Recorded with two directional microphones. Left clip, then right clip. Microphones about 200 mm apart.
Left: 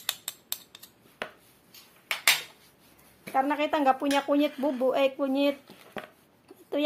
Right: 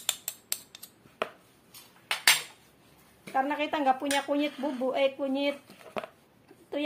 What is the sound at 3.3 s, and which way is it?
Speech, 35° left (ahead or behind).